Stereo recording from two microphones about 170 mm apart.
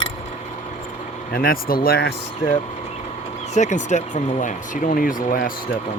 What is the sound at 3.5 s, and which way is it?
Speech, 45° left (ahead or behind).